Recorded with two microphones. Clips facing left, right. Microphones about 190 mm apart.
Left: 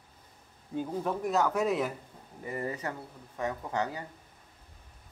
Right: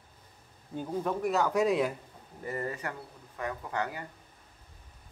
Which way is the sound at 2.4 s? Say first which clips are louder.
Even; 15° left (ahead or behind).